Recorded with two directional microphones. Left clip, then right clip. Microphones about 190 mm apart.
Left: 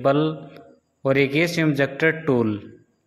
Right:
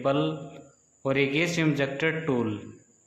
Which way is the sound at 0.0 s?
30° left (ahead or behind).